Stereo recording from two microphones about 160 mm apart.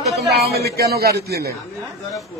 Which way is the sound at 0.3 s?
90° right.